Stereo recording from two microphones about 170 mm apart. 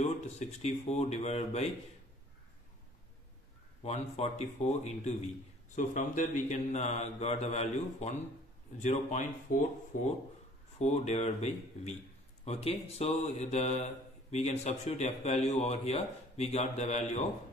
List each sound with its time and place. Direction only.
0.0 s a man's voice: 40° left (ahead or behind)
3.8 s a man's voice: 40° left (ahead or behind)
5.8 s mantra: 50° left (ahead or behind)
10.8 s a man's voice: 40° left (ahead or behind)